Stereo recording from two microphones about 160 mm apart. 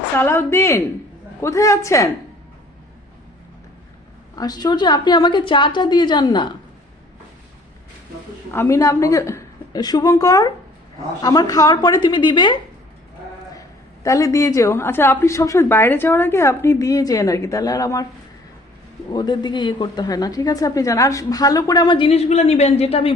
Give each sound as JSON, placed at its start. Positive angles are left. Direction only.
{"t": 0.2, "sound": "a woman's voice", "side_deg": 15}
{"t": 4.4, "sound": "a woman's voice", "side_deg": 25}
{"t": 8.5, "sound": "a woman's voice", "side_deg": 20}
{"t": 13.6, "sound": "a woman's voice", "side_deg": 20}
{"t": 19.1, "sound": "a woman's voice", "side_deg": 25}